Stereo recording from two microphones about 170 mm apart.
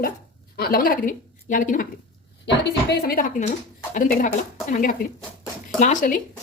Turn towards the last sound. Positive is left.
turn(degrees=50)  # may be behind; listen again after turning